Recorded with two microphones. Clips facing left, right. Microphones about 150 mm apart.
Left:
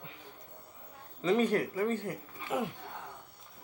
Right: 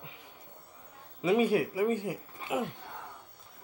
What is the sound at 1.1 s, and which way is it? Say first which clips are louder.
Speech: right 2 dB; 10° right (ahead or behind).